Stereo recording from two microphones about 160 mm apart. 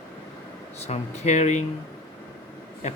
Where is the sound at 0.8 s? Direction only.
45° left (ahead or behind).